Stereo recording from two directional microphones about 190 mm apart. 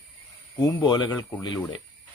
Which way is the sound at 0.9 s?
25° left (ahead or behind).